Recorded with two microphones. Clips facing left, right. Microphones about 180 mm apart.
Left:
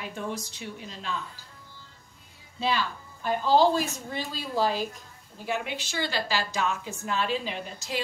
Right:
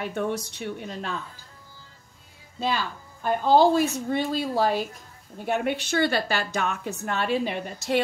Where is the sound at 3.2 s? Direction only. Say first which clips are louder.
Right 3 dB; 55° right (ahead or behind).